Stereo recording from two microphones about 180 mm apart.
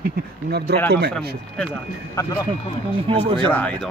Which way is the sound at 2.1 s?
15° left (ahead or behind).